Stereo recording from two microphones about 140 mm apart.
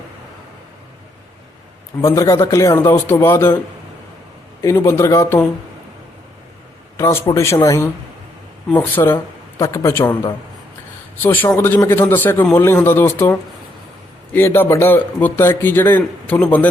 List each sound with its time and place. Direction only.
2.0 s a man's voice: 20° left (ahead or behind)
4.6 s a man's voice: 20° left (ahead or behind)
6.9 s a man's voice: 20° left (ahead or behind)
11.2 s a man's voice: 15° left (ahead or behind)
14.3 s a man's voice: 15° left (ahead or behind)